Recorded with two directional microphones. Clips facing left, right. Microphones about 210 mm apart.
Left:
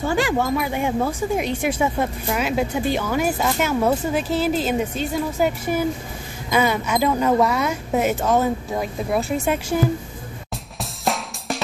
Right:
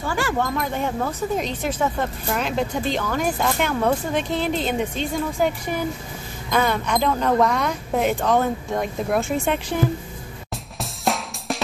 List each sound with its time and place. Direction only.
0.0 s speech: 25° left (ahead or behind)
0.3 s speech: 10° left (ahead or behind)
10.8 s drum kit: centre (ahead or behind)